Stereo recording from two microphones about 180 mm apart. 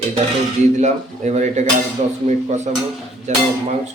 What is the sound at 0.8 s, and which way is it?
A man's voice, 40° right (ahead or behind).